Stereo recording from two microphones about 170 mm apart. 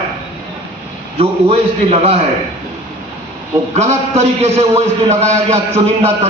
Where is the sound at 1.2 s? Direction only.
35° right (ahead or behind).